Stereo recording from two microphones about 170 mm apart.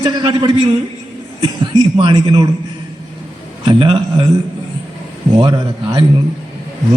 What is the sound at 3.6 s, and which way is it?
Speech, 30° right (ahead or behind).